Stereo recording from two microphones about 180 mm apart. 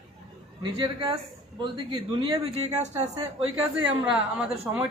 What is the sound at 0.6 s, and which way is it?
Speech, 25° right (ahead or behind).